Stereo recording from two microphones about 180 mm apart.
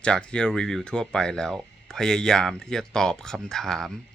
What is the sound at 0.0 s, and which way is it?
Speech, 5° left (ahead or behind).